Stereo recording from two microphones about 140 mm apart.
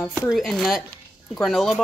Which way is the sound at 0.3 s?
Centre (ahead or behind).